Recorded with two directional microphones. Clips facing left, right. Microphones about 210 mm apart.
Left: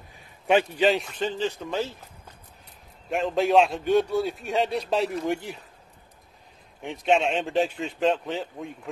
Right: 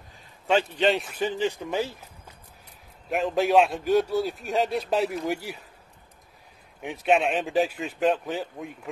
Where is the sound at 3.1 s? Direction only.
Centre (ahead or behind).